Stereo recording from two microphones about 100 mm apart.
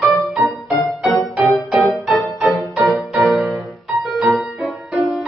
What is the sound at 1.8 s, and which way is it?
Music, centre (ahead or behind).